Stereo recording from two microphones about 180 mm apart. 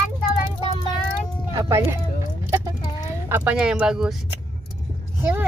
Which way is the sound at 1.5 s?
15° right (ahead or behind).